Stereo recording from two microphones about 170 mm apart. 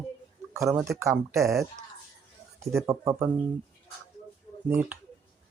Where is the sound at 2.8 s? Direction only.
15° right (ahead or behind).